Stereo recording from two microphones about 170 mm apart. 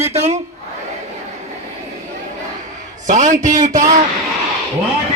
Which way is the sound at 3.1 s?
45° right (ahead or behind).